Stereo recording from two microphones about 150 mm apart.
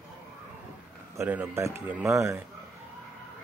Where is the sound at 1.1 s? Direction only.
15° right (ahead or behind).